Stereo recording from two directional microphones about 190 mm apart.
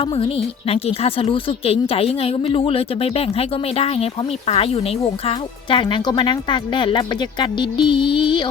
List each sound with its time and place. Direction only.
0.0 s speech: 30° left (ahead or behind)